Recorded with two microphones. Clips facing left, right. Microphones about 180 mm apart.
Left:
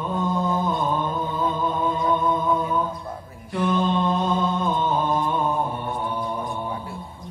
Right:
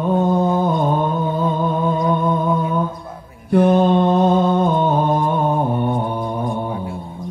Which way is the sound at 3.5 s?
55° right (ahead or behind).